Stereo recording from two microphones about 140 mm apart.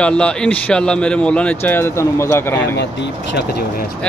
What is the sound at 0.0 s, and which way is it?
A man's voice, 5° left (ahead or behind).